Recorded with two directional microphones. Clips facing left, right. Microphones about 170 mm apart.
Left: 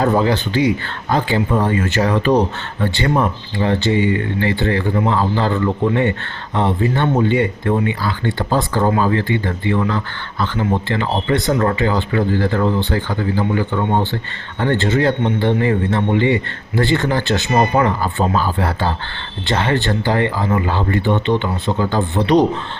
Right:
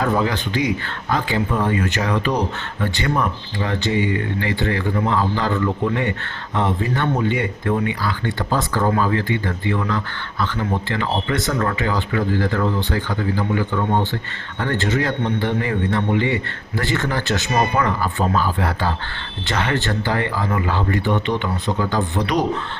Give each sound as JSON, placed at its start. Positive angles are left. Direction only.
{"t": 0.0, "sound": "a man's voice", "side_deg": 30}